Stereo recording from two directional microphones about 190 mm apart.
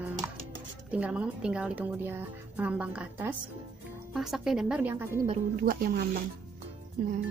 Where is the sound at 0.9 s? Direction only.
5° right (ahead or behind).